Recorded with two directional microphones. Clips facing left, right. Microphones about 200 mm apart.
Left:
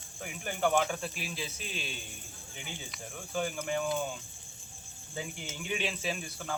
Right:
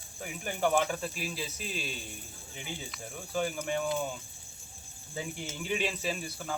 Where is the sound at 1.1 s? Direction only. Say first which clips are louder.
Right 2 dB; 40° right (ahead or behind).